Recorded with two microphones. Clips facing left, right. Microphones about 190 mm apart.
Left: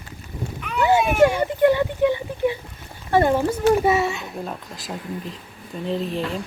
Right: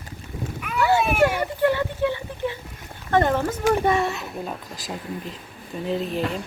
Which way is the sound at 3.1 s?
10° left (ahead or behind).